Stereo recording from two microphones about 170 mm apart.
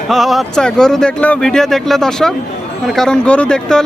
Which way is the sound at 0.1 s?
Centre (ahead or behind).